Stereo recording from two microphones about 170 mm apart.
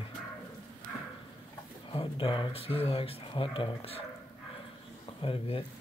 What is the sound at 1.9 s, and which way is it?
Speech, 30° left (ahead or behind).